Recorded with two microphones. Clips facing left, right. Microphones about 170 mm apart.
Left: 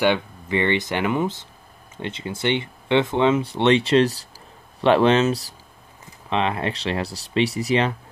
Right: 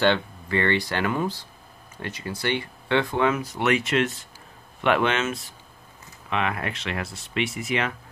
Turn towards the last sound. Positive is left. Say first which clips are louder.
# left 6 dB
turn(degrees=35)  # may be behind; listen again after turning